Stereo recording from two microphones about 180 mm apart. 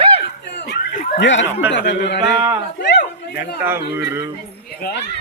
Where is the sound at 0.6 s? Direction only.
70° left (ahead or behind).